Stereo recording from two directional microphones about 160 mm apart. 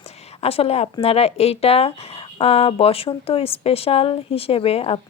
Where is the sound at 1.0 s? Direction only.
40° left (ahead or behind).